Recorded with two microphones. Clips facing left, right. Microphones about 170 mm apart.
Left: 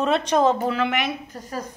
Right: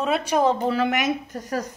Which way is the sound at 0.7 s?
40° right (ahead or behind).